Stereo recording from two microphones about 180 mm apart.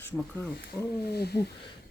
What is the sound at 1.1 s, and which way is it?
Speech, 65° left (ahead or behind).